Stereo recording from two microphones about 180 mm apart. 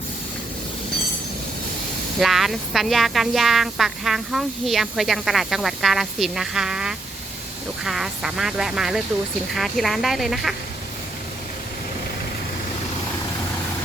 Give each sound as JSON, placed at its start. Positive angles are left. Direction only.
{"t": 2.1, "sound": "speech", "side_deg": 0}